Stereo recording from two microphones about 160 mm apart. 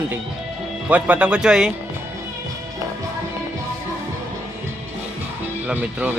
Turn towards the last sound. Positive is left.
turn(degrees=-10)  # may be behind; listen again after turning